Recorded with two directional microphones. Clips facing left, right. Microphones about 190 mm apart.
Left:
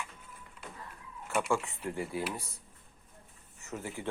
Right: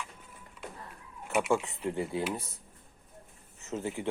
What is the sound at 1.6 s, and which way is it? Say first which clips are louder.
Speech: right 4 dB; 20° right (ahead or behind).